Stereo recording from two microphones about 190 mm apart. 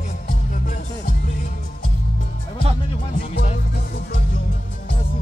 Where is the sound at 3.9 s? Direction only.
55° left (ahead or behind).